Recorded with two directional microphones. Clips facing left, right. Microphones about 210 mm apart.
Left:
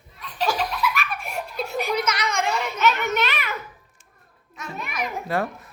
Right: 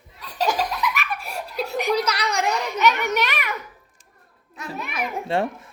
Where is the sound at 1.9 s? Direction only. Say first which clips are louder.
Right 2 dB; 35° right (ahead or behind).